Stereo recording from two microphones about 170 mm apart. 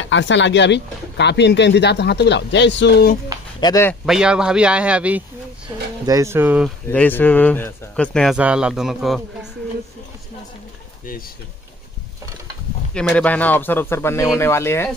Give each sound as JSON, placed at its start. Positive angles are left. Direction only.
{"t": 0.0, "sound": "speech", "side_deg": 90}
{"t": 3.6, "sound": "speech", "side_deg": 20}
{"t": 4.0, "sound": "speech", "side_deg": -5}
{"t": 6.0, "sound": "speech", "side_deg": -15}
{"t": 6.9, "sound": "speech", "side_deg": 10}
{"t": 8.4, "sound": "speech", "side_deg": -5}
{"t": 12.9, "sound": "speech", "side_deg": 10}